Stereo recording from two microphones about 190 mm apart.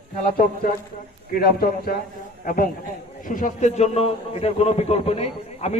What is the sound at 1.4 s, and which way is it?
A man's voice, 50° left (ahead or behind).